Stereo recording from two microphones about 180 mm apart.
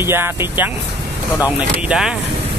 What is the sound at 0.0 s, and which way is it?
Speech, 10° right (ahead or behind).